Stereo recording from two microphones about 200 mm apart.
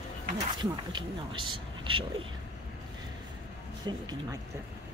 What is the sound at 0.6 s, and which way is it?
Speech, 25° right (ahead or behind).